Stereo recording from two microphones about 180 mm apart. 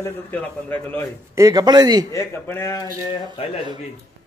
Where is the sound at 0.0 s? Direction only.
10° left (ahead or behind).